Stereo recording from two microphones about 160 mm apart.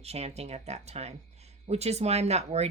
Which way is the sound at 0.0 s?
40° right (ahead or behind).